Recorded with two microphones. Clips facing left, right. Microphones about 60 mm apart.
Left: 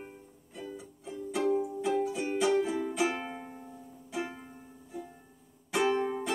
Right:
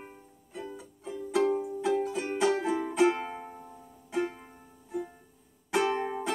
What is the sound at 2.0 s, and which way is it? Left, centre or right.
Music, right.